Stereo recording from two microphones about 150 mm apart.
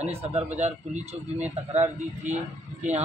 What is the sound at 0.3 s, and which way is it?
Speech, 45° right (ahead or behind).